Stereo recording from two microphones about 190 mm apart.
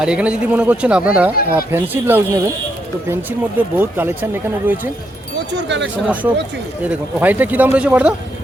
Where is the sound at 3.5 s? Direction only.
10° right (ahead or behind).